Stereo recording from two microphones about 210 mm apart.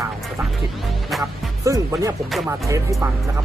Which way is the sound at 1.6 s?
15° right (ahead or behind).